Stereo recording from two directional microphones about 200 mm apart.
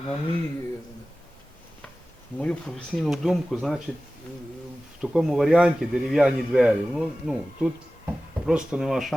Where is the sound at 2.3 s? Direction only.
5° left (ahead or behind).